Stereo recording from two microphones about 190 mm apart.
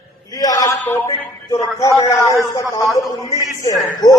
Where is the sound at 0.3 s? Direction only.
20° left (ahead or behind).